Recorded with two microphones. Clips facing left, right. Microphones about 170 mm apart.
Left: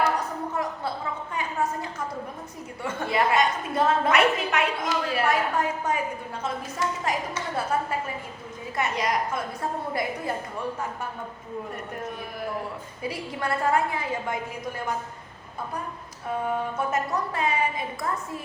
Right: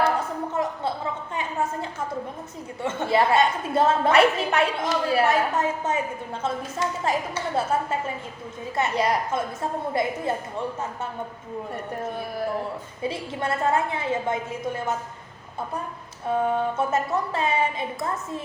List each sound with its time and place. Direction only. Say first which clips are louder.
0.0 s a sound: right 2 dB; 25° right (ahead or behind)
2.8 s a woman's voice: right 3 dB; 25° right (ahead or behind)
13.0 s a woman's voice: right 2 dB; 25° right (ahead or behind)
16.7 s a woman's voice: right 3 dB; 25° right (ahead or behind)